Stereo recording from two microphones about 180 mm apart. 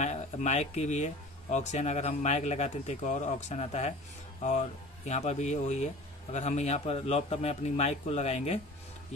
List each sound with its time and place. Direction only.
0.0 s speech: 40° left (ahead or behind)